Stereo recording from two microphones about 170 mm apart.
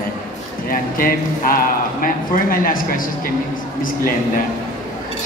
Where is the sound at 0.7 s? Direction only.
55° left (ahead or behind).